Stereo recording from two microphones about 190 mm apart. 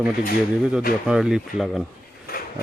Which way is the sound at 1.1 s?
5° right (ahead or behind).